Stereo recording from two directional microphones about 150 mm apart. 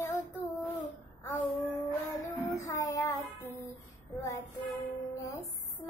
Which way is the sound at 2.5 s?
20° left (ahead or behind).